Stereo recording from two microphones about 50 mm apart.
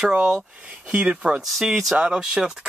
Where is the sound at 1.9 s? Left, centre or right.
Centre.